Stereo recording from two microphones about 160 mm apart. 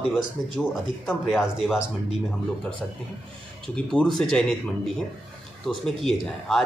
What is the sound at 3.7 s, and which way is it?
Speech, 5° left (ahead or behind).